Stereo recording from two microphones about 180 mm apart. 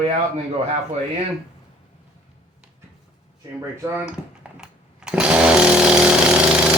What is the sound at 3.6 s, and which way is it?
Chainsaw, 15° right (ahead or behind).